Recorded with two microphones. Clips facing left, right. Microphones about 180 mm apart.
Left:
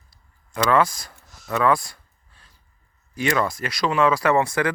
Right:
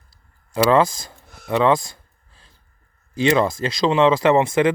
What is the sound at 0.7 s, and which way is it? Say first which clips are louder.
Speech: right 2 dB; 25° right (ahead or behind).